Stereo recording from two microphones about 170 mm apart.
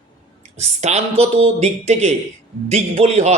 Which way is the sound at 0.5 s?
40° right (ahead or behind).